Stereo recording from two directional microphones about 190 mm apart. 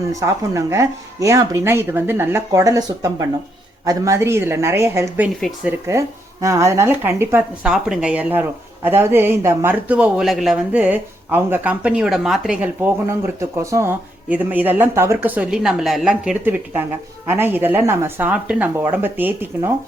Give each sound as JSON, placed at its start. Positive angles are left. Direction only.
{"t": 0.1, "sound": "speech", "side_deg": -15}
{"t": 5.4, "sound": "speech", "side_deg": 0}
{"t": 5.8, "sound": "speech", "side_deg": -15}